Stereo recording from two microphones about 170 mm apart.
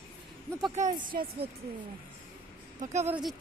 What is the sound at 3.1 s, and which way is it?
Speech, centre (ahead or behind).